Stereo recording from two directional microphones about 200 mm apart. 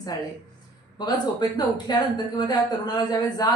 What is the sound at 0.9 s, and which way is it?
Speech, 20° left (ahead or behind).